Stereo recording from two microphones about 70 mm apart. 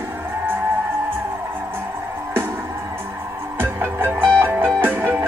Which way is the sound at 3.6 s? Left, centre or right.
Right.